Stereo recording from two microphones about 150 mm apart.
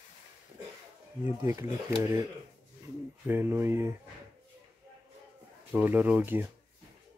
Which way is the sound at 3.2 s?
15° right (ahead or behind).